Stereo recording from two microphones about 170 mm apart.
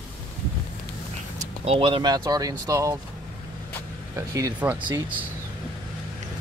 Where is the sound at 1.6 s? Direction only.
35° right (ahead or behind); by 3.0 s 20° right (ahead or behind).